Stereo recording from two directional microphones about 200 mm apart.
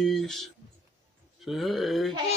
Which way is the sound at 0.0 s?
Centre (ahead or behind).